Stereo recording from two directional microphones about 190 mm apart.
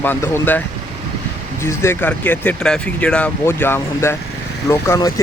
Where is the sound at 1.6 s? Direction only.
15° left (ahead or behind).